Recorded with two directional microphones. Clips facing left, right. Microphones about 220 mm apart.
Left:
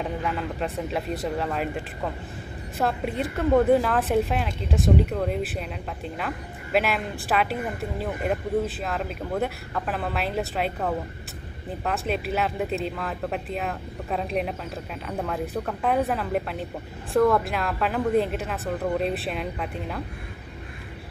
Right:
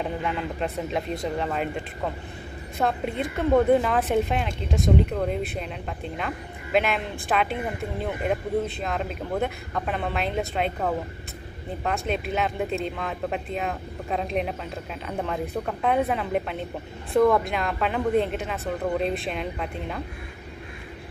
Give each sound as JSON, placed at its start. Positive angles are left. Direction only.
{"t": 0.0, "sound": "speech", "side_deg": 0}
{"t": 2.8, "sound": "speech", "side_deg": 5}
{"t": 12.1, "sound": "speech", "side_deg": 5}